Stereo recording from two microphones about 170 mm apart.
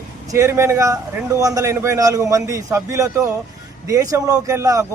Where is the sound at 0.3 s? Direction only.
15° right (ahead or behind).